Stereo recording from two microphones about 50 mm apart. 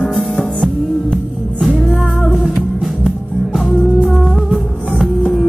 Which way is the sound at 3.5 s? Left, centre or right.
Centre.